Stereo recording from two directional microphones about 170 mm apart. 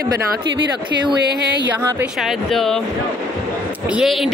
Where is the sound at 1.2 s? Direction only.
80° right.